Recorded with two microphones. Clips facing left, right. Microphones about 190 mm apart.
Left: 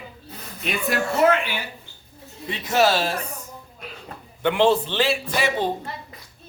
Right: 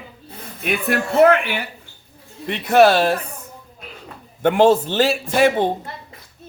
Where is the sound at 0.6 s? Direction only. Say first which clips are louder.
Right 3 dB; 60° right (ahead or behind).